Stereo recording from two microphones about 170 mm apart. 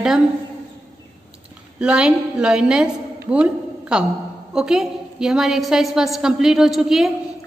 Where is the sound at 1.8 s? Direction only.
5° right (ahead or behind).